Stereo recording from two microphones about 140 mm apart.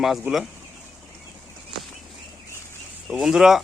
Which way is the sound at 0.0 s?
Centre (ahead or behind).